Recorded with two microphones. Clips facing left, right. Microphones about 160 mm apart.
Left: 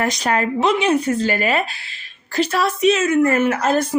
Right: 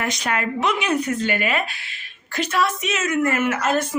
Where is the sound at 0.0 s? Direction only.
35° left (ahead or behind).